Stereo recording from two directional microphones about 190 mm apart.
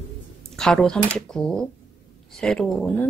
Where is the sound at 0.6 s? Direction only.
5° left (ahead or behind).